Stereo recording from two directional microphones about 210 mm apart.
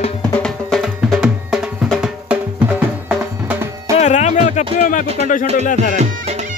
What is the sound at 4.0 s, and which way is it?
Music, 35° left (ahead or behind).